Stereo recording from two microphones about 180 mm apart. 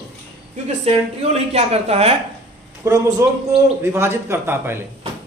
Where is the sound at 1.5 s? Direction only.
35° right (ahead or behind).